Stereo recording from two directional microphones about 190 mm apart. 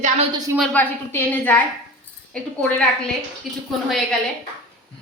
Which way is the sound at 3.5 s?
Centre (ahead or behind).